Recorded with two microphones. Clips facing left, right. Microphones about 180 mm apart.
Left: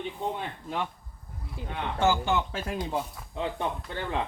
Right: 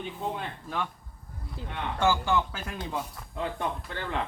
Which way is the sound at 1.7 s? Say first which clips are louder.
Left 1 dB; 20° left (ahead or behind).